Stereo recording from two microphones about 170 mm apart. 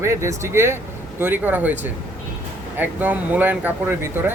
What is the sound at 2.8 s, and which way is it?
Speech, 10° right (ahead or behind).